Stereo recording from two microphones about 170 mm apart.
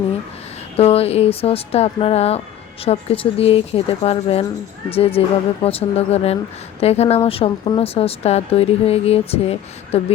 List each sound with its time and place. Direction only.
0.8 s speech: 35° left (ahead or behind)